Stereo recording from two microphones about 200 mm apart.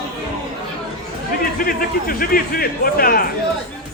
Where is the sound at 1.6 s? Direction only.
45° left (ahead or behind).